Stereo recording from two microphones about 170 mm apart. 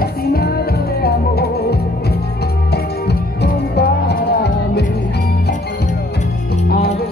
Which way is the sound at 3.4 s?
70° left (ahead or behind).